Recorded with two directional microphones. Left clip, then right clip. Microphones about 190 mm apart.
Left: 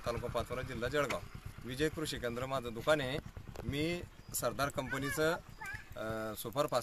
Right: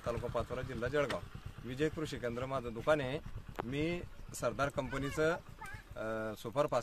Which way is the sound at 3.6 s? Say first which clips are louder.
Left 1 dB; 25° right (ahead or behind).